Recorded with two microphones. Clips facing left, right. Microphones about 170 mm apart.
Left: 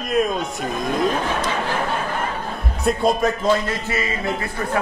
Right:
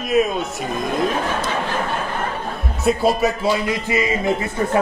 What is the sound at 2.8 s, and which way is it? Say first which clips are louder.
Speech: right 1 dB; 5° right (ahead or behind).